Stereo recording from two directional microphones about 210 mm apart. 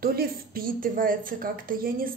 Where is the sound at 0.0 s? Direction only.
45° right (ahead or behind).